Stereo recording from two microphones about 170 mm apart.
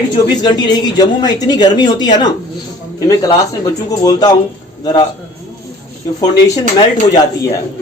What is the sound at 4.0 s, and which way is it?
Speech, 20° left (ahead or behind).